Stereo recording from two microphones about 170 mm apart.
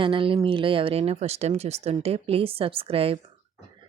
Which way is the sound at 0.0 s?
30° right (ahead or behind).